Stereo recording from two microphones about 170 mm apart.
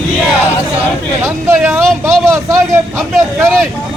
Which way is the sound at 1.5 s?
15° right (ahead or behind).